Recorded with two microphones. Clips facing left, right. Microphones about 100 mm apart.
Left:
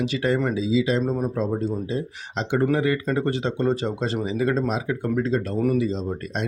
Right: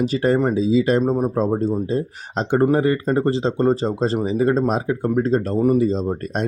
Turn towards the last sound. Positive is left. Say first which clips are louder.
# right 5 dB
turn(degrees=-45)  # may be behind; listen again after turning